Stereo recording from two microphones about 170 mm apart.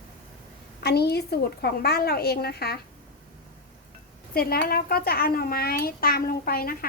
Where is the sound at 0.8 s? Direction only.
70° left (ahead or behind).